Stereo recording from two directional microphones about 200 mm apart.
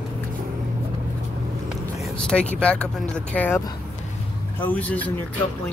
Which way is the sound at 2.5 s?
5° left (ahead or behind).